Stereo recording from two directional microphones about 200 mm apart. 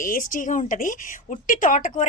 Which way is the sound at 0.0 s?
40° left (ahead or behind).